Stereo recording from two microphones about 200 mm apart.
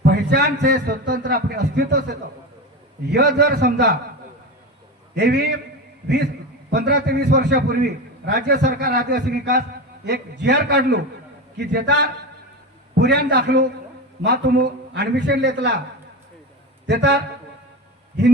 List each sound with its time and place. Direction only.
0.0 s a man's voice: 55° right (ahead or behind)
5.1 s a man's voice: 60° right (ahead or behind)
6.7 s a man's voice: 55° right (ahead or behind)
16.8 s a man's voice: 60° right (ahead or behind)